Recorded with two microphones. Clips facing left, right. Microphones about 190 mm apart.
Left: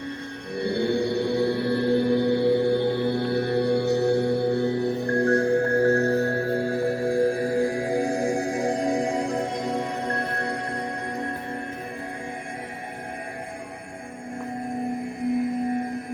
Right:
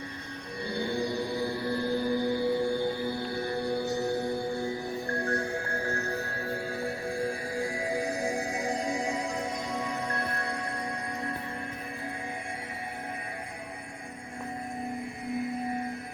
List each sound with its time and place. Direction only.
0.5 s mantra: 70° left (ahead or behind)